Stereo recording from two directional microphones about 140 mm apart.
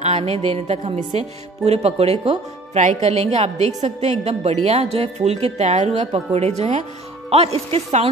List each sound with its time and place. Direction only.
0.0 s speech: 50° right (ahead or behind)